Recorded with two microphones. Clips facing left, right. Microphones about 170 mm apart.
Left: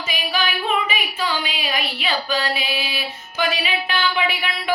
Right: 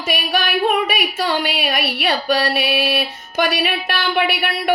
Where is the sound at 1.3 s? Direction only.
70° right (ahead or behind).